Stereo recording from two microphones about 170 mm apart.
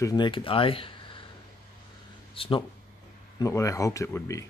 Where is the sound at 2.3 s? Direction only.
30° left (ahead or behind).